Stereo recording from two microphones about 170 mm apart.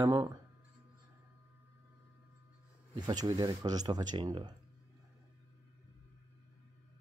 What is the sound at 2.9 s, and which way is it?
Speech, 25° right (ahead or behind).